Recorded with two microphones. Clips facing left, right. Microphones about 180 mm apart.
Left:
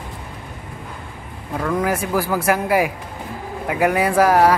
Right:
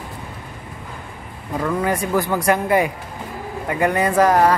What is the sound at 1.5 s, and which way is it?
Speech, 5° left (ahead or behind).